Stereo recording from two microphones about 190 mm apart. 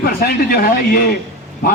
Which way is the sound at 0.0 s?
55° left (ahead or behind).